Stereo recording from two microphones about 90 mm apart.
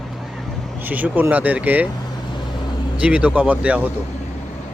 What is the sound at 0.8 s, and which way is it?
Speech, 20° right (ahead or behind).